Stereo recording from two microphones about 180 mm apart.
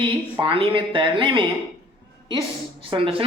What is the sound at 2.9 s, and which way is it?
Speech, 30° right (ahead or behind).